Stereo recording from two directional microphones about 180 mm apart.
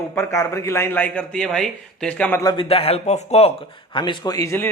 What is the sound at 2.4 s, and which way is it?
A man's voice, 25° left (ahead or behind).